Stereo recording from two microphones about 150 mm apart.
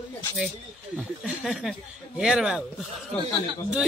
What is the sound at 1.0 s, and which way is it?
A man's voice, centre (ahead or behind).